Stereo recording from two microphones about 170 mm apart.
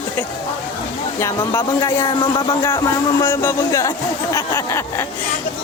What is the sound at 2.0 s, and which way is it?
Speech, 30° left (ahead or behind).